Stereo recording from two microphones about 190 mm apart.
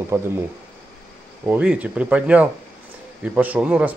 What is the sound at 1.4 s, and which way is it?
Speech, 5° right (ahead or behind).